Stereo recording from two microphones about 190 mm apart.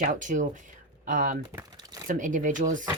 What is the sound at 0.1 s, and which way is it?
Speech, 40° right (ahead or behind).